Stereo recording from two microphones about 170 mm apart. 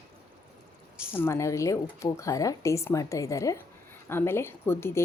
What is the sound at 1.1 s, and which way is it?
A woman's voice, 15° left (ahead or behind).